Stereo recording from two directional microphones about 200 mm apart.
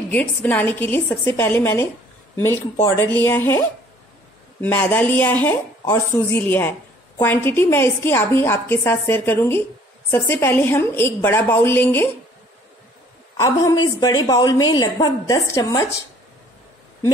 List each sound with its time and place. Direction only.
0.1 s a woman's voice: 10° left (ahead or behind)
13.4 s a woman's voice: 20° left (ahead or behind)